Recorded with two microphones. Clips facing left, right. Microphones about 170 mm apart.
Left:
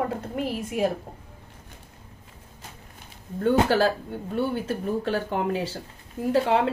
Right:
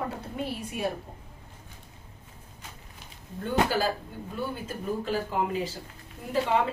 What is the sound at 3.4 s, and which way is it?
Speech, 70° left (ahead or behind).